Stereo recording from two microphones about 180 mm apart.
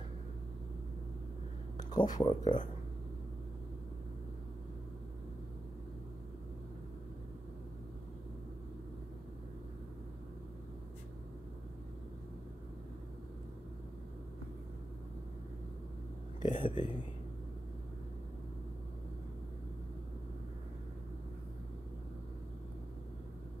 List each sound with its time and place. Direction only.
1.8 s speech: 20° left (ahead or behind)
2.4 s speech: 45° left (ahead or behind)
16.4 s a sound: 25° left (ahead or behind)